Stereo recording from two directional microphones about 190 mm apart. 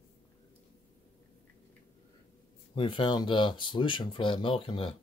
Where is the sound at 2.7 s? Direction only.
25° left (ahead or behind).